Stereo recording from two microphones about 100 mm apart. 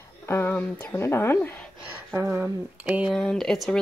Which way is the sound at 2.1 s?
20° right (ahead or behind).